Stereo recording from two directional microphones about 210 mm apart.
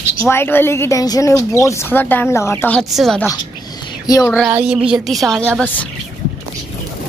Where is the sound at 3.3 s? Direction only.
15° left (ahead or behind).